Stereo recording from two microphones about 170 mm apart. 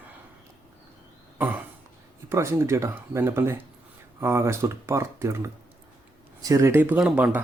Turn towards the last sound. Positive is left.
turn(degrees=-5)  # may be behind; listen again after turning